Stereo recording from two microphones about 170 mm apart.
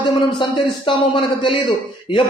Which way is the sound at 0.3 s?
30° left (ahead or behind).